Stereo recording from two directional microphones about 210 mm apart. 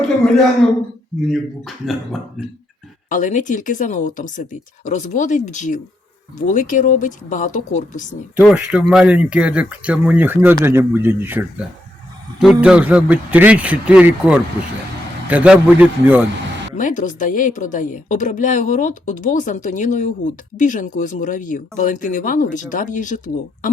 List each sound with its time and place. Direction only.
1.3 s speech: centre (ahead or behind)
3.1 s a woman's voice: 40° left (ahead or behind)
8.4 s speech: 5° right (ahead or behind)
16.7 s a woman's voice: 35° left (ahead or behind)